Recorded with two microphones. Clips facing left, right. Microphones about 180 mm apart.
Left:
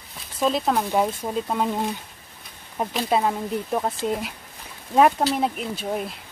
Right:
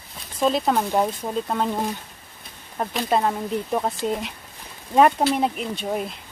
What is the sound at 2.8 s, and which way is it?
Speech, 5° left (ahead or behind).